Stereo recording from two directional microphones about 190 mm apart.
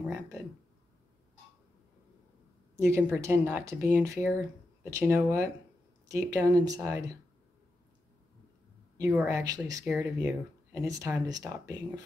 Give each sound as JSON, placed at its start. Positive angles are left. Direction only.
{"t": 2.7, "sound": "a woman's voice", "side_deg": -15}
{"t": 9.1, "sound": "speech", "side_deg": -15}